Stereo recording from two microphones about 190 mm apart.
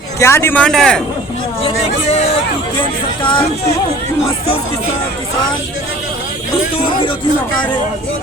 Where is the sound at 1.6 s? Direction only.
35° left (ahead or behind).